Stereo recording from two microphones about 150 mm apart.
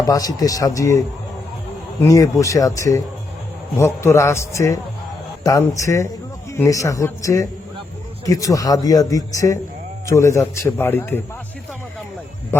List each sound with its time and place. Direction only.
0.0 s a man's voice: 25° left (ahead or behind)